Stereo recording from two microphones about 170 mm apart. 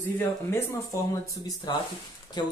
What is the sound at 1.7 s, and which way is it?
Speech, 25° left (ahead or behind).